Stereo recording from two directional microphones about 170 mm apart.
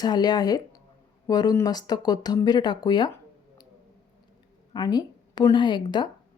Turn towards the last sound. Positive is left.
turn(degrees=25)  # may be behind; listen again after turning